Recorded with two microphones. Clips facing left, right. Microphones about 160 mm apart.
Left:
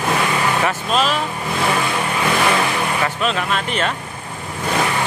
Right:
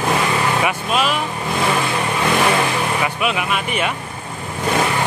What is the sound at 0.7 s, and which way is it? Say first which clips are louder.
Speech: even; 10° right (ahead or behind).